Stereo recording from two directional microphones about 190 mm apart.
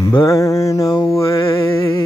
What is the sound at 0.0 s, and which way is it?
Mantra, 15° left (ahead or behind).